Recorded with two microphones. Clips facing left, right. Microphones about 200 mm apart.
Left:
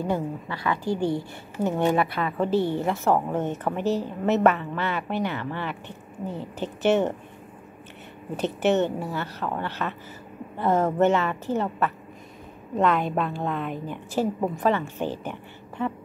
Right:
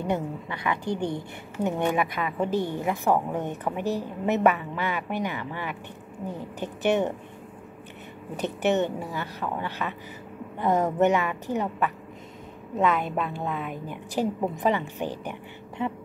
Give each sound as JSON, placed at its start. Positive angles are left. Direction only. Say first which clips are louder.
{"t": 0.0, "sound": "a woman's voice", "louder": "left 1 dB", "side_deg": -20}
{"t": 8.4, "sound": "a woman's voice", "louder": "left 2 dB", "side_deg": -15}
{"t": 12.7, "sound": "a woman's voice", "louder": "left 2 dB", "side_deg": -5}